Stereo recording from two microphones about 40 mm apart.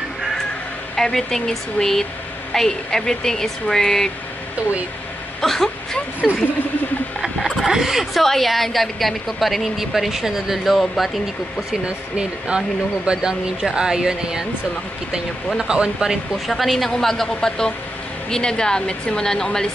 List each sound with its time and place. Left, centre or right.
0.9 s a woman's voice: centre
5.4 s a woman's voice: centre
7.2 s boat: centre
8.2 s a woman's voice: centre
11.8 s speech: right
15.7 s speech: centre
16.4 s a woman's voice: centre